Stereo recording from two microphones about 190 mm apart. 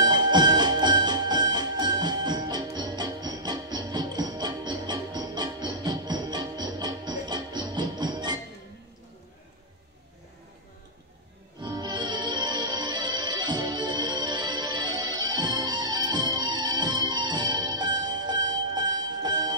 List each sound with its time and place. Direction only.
0.0 s music: 20° right (ahead or behind)
11.6 s music: 20° right (ahead or behind)